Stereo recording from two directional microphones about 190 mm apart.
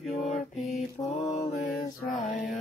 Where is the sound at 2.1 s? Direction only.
45° left (ahead or behind).